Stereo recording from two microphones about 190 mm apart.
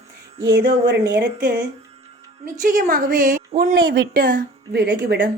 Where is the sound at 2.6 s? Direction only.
45° right (ahead or behind).